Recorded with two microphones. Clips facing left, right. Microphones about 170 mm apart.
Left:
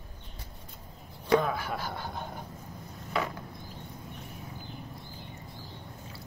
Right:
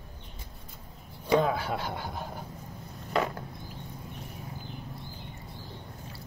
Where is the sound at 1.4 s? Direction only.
25° right (ahead or behind).